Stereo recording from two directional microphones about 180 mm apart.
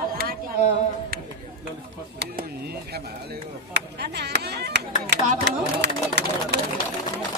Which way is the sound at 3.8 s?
65° right (ahead or behind).